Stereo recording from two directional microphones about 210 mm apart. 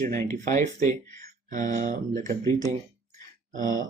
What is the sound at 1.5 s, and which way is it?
Speech, 40° right (ahead or behind).